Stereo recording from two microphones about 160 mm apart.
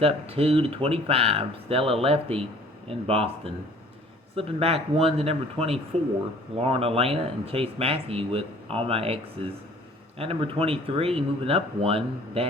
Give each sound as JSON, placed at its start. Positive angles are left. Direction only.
{"t": 0.0, "sound": "speech", "side_deg": -35}
{"t": 10.2, "sound": "speech", "side_deg": -35}